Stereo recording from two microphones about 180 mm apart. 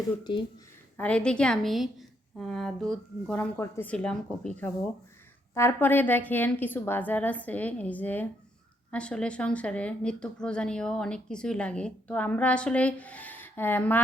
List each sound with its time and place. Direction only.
0.3 s speech: 25° left (ahead or behind)
0.9 s a woman's voice: 5° left (ahead or behind)